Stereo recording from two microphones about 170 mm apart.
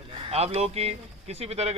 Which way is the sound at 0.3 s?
40° right (ahead or behind).